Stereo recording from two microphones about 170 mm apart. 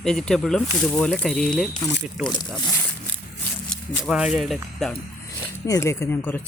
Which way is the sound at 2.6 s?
15° left (ahead or behind).